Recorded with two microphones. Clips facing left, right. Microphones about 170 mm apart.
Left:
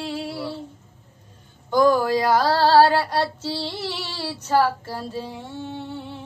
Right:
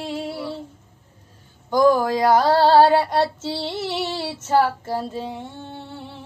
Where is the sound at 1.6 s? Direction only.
10° right (ahead or behind).